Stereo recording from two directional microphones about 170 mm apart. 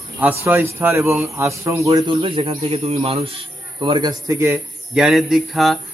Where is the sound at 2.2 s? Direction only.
35° right (ahead or behind).